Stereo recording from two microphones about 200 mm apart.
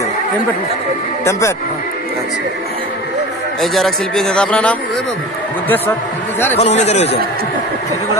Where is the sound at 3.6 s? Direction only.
Centre (ahead or behind).